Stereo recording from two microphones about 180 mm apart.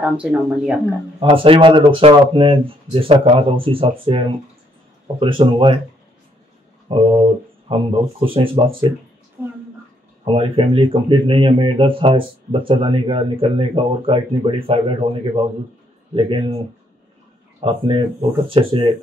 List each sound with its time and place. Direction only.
0.0 s speech: 5° right (ahead or behind)
1.3 s speech: 30° right (ahead or behind)
6.9 s speech: 30° right (ahead or behind)
10.2 s speech: 30° right (ahead or behind)
17.6 s speech: 30° right (ahead or behind)